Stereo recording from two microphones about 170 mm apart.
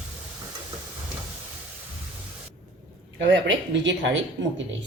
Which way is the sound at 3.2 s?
90° right.